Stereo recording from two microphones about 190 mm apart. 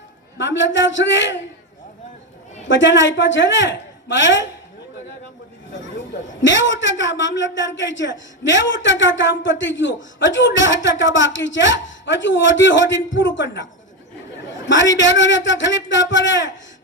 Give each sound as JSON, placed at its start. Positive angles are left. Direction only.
{"t": 0.3, "sound": "a woman's voice", "side_deg": 75}
{"t": 2.6, "sound": "a woman's voice", "side_deg": 75}
{"t": 6.4, "sound": "a woman's voice", "side_deg": 75}
{"t": 14.7, "sound": "a woman's voice", "side_deg": 75}